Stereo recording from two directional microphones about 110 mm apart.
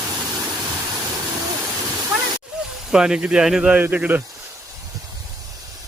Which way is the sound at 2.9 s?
5° right (ahead or behind).